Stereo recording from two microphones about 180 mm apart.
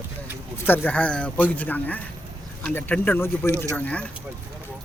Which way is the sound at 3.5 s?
15° right (ahead or behind).